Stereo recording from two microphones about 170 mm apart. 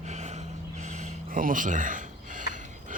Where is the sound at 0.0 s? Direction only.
40° right (ahead or behind).